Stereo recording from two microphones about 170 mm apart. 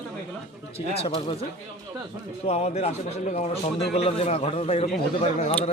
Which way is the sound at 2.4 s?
40° left (ahead or behind).